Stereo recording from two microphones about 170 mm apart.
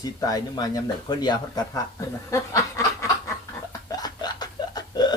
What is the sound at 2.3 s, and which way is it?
Snicker, 15° left (ahead or behind).